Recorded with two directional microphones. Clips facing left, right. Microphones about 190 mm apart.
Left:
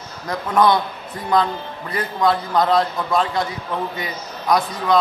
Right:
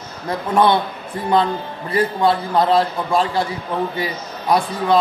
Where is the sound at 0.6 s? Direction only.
30° right (ahead or behind).